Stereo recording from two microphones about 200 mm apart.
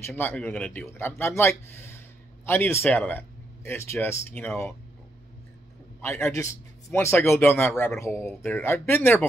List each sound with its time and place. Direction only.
0.0 s speech: 10° left (ahead or behind)
5.9 s speech: 10° left (ahead or behind)